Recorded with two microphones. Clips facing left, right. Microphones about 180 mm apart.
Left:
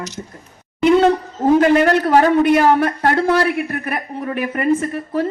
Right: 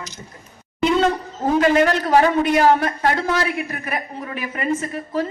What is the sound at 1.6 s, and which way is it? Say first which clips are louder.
A man's voice: left 1 dB; 45° left (ahead or behind).